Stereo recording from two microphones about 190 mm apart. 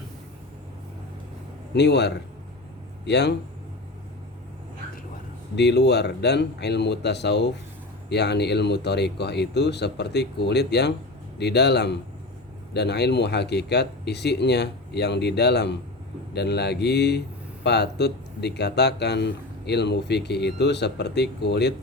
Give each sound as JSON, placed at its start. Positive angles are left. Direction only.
{"t": 1.7, "sound": "speech", "side_deg": 65}
{"t": 5.5, "sound": "speech", "side_deg": 60}